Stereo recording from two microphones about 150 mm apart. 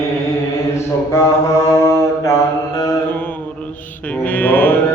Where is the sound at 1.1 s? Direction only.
20° left (ahead or behind).